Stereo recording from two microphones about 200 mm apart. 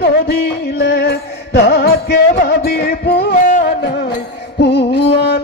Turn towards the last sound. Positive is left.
turn(degrees=55)  # may be behind; listen again after turning